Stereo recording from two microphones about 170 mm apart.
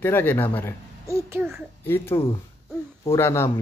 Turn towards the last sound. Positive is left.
turn(degrees=15)  # may be behind; listen again after turning